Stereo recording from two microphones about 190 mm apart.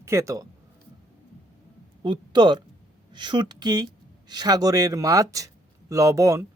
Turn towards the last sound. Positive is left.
turn(degrees=-15)  # may be behind; listen again after turning